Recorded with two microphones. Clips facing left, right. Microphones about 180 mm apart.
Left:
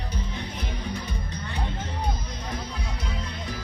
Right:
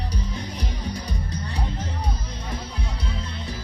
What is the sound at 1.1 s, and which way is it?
Music, 35° right (ahead or behind).